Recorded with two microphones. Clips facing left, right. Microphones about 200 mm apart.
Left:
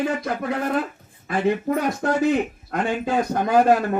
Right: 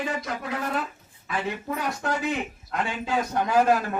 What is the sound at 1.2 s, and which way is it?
A man's voice, 45° left (ahead or behind).